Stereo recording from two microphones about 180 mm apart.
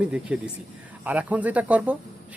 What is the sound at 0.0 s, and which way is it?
Speech, 5° right (ahead or behind).